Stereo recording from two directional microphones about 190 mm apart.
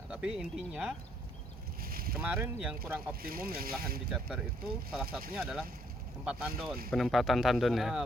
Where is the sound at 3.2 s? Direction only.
50° right (ahead or behind).